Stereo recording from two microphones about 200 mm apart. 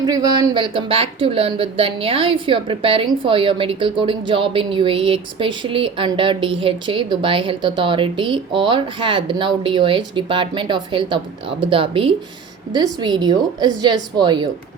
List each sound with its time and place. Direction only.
0.0 s speech: 20° right (ahead or behind)